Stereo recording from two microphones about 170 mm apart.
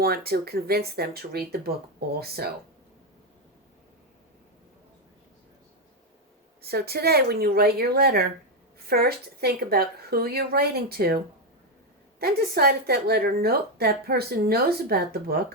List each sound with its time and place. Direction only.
0.0 s speech: 65° right (ahead or behind)
6.6 s a woman's voice: 65° right (ahead or behind)
12.2 s a woman's voice: 65° right (ahead or behind)